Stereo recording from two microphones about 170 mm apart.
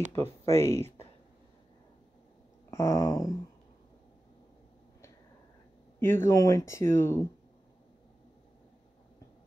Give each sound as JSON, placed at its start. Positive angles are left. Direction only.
{"t": 0.1, "sound": "speech", "side_deg": 15}
{"t": 2.7, "sound": "speech", "side_deg": 15}
{"t": 5.9, "sound": "speech", "side_deg": 15}